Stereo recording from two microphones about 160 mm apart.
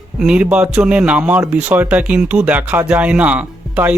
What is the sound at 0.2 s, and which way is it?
Speech, 5° right (ahead or behind).